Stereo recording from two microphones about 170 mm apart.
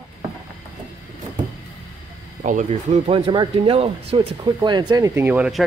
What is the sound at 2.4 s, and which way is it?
Speech, 50° right (ahead or behind).